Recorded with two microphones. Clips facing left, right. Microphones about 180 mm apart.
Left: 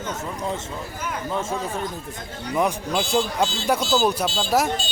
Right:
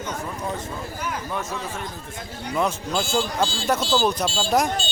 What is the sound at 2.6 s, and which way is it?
Speech, 15° left (ahead or behind).